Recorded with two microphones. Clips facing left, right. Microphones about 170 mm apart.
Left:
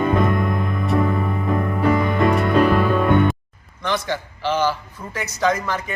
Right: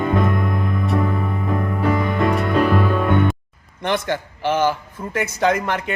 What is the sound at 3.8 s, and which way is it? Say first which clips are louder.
A man's voice: right 2 dB; 55° right (ahead or behind).